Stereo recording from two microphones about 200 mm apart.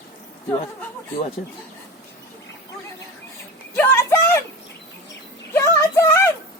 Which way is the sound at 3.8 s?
10° left (ahead or behind).